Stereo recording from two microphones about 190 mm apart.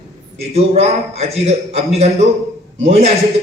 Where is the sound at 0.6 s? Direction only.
35° right (ahead or behind).